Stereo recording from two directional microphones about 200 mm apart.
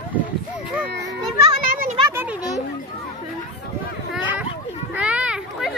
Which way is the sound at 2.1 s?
10° right (ahead or behind).